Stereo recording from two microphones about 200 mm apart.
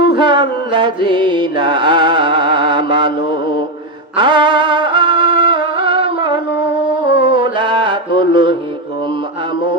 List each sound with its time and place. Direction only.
0.0 s music: 25° right (ahead or behind)
4.2 s music: 25° right (ahead or behind)
7.3 s mantra: 25° right (ahead or behind)